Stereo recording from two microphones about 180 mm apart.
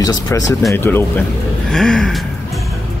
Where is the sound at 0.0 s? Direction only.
20° left (ahead or behind).